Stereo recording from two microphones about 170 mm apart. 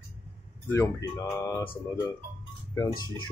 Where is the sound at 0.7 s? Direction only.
20° left (ahead or behind).